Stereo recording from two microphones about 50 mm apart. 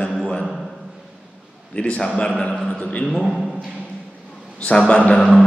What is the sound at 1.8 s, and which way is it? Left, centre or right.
A man's voice, left.